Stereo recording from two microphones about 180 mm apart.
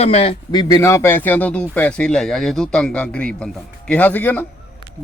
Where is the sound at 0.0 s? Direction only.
35° left (ahead or behind); by 4.4 s 10° left (ahead or behind).